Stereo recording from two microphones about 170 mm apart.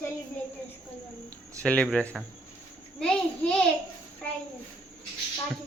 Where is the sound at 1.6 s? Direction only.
5° left (ahead or behind).